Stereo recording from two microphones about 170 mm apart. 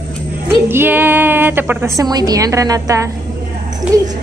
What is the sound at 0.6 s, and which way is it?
A woman's voice, 10° right (ahead or behind).